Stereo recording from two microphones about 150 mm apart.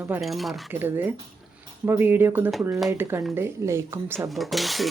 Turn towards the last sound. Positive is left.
turn(degrees=0)  # may be behind; listen again after turning